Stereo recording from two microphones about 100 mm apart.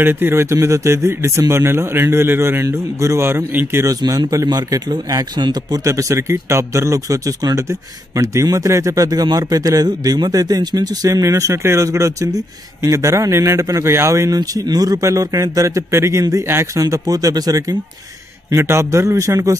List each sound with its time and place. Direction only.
0.0 s speech: 20° right (ahead or behind)
3.9 s speech: 40° right (ahead or behind)
5.9 s speech: 30° right (ahead or behind)